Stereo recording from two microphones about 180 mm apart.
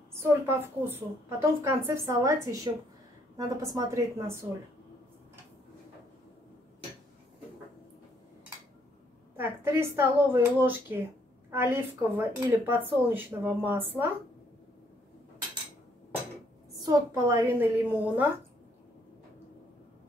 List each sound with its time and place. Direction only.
0.1 s a woman's voice: 15° right (ahead or behind)
9.4 s speech: 15° right (ahead or behind)
16.8 s speech: 20° right (ahead or behind)